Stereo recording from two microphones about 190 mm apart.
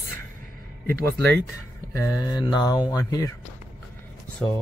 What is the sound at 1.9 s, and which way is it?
Mantra, 20° left (ahead or behind).